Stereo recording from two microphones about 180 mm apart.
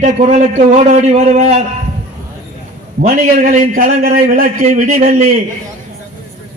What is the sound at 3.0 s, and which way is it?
A man's voice, 45° right (ahead or behind).